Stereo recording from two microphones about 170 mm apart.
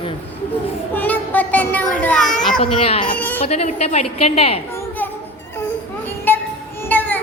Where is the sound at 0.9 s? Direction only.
10° left (ahead or behind).